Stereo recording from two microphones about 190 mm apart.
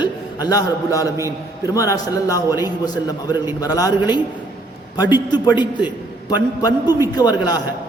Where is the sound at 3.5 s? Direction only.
20° left (ahead or behind).